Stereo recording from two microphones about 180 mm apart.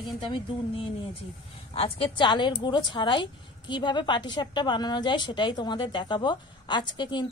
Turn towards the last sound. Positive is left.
turn(degrees=25)  # may be behind; listen again after turning